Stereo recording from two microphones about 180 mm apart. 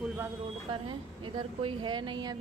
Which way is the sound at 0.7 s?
30° right (ahead or behind).